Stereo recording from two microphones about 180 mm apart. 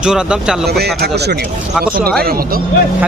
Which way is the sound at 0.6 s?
60° right (ahead or behind).